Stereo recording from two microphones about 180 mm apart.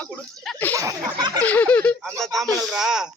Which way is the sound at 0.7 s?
20° right (ahead or behind).